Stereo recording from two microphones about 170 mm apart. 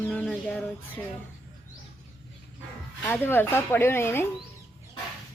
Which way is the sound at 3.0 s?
10° left (ahead or behind).